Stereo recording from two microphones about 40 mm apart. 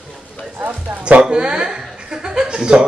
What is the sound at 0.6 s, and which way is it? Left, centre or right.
A man's voice, right.